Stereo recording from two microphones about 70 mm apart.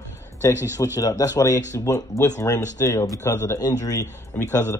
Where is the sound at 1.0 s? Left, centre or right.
Left.